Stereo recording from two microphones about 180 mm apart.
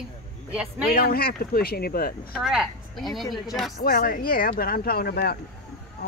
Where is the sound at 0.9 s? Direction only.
55° left (ahead or behind).